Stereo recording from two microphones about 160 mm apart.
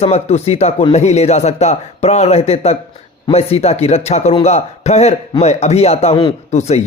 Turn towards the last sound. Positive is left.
turn(degrees=45)  # may be behind; listen again after turning